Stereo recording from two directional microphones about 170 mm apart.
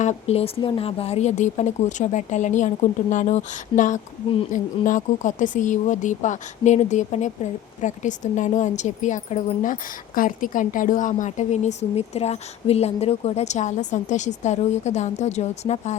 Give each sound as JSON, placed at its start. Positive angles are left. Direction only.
{"t": 0.0, "sound": "a woman's voice", "side_deg": 40}